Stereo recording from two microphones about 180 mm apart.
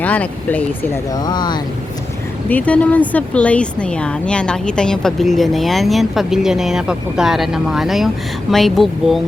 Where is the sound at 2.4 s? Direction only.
10° left (ahead or behind).